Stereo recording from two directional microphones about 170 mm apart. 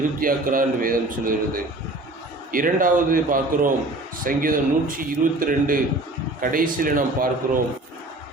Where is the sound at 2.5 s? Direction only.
55° right (ahead or behind).